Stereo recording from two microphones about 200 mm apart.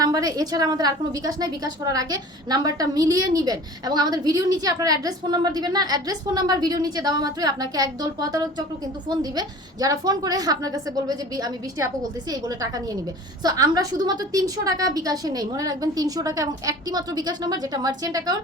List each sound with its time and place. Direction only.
0.0 s a woman's voice: 20° right (ahead or behind)